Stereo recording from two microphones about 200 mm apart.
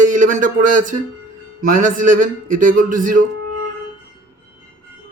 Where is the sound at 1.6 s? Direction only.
40° right (ahead or behind).